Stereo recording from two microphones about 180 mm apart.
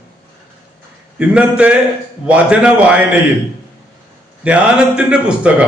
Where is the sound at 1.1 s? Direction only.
5° right (ahead or behind).